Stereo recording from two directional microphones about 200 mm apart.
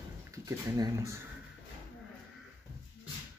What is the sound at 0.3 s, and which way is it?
Speech, 15° right (ahead or behind).